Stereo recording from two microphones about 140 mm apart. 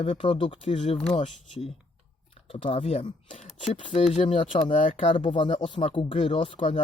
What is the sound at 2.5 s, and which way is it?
Speech, 40° left (ahead or behind).